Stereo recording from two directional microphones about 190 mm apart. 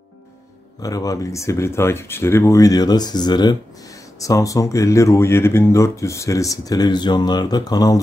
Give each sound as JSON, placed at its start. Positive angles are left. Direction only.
{"t": 0.8, "sound": "speech", "side_deg": 20}